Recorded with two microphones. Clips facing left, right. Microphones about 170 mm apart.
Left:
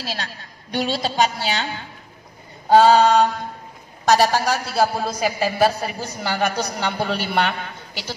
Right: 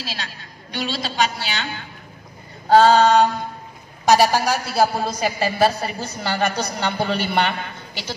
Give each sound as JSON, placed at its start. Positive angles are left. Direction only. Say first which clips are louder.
{"t": 0.0, "sound": "a woman's voice", "louder": "left 2 dB", "side_deg": 50}
{"t": 2.7, "sound": "a man's voice", "louder": "even", "side_deg": 10}
{"t": 4.1, "sound": "a man's voice", "louder": "right 1 dB", "side_deg": -5}